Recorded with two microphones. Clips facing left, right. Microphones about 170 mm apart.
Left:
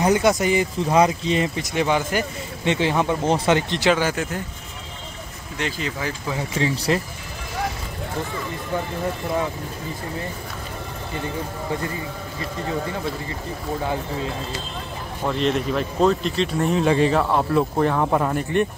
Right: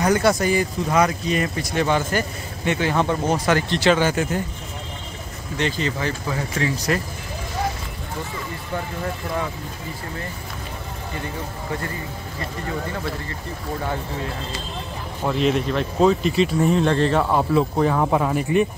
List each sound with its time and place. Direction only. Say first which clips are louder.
0.0 s speech: even; 20° left (ahead or behind)
5.6 s speech: right 3 dB; 5° left (ahead or behind)
6.6 s speech: left 2 dB; 25° left (ahead or behind)
15.2 s speech: right 1 dB; 5° right (ahead or behind)